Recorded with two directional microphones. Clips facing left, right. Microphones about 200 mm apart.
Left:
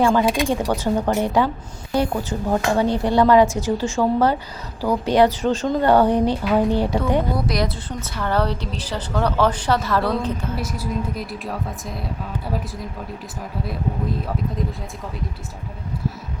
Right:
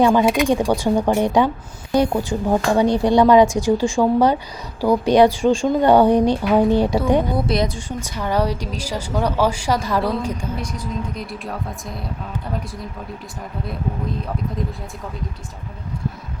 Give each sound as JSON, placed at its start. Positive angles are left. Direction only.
{"t": 0.0, "sound": "a woman's voice", "side_deg": -20}
{"t": 7.7, "sound": "a woman's voice", "side_deg": -15}
{"t": 10.6, "sound": "speech", "side_deg": 5}